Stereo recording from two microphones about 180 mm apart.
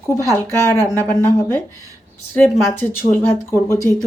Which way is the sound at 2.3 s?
5° left (ahead or behind).